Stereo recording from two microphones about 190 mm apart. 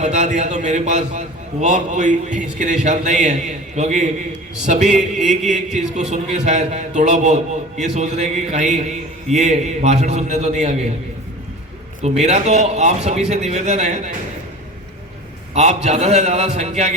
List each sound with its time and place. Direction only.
0.0 s a man's voice: 40° right (ahead or behind)
5.2 s chant: centre (ahead or behind)
6.1 s a man's voice: 40° right (ahead or behind)
12.0 s a man's voice: 35° right (ahead or behind)
15.5 s a man's voice: 35° right (ahead or behind)